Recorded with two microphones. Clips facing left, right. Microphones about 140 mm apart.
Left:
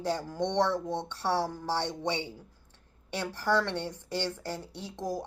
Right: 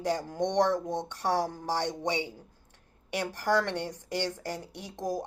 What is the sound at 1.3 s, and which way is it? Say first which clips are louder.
Speech: right 1 dB; 45° right (ahead or behind).